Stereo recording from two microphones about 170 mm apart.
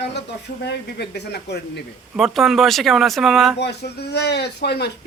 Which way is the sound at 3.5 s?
75° left (ahead or behind).